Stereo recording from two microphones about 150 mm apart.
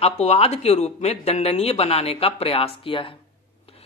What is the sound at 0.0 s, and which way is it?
Speech, 45° left (ahead or behind).